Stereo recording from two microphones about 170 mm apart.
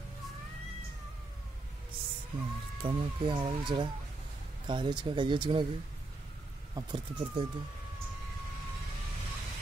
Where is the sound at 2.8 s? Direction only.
30° right (ahead or behind).